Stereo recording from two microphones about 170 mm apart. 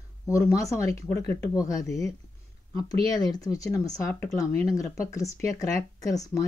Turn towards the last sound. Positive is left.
turn(degrees=20)  # may be behind; listen again after turning